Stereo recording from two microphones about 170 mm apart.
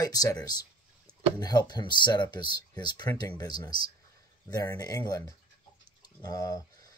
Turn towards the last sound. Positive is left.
turn(degrees=20)  # may be behind; listen again after turning